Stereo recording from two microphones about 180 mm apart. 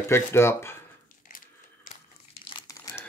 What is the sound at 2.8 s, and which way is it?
Crumpling, 15° left (ahead or behind).